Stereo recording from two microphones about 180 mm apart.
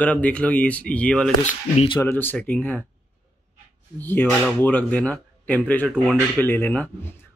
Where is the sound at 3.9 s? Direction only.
10° left (ahead or behind).